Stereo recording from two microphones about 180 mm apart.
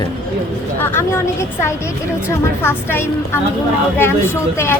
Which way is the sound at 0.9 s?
15° left (ahead or behind).